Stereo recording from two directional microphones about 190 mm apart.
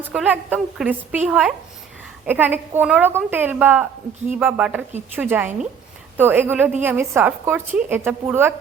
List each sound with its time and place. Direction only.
0.0 s a woman's voice: 5° right (ahead or behind)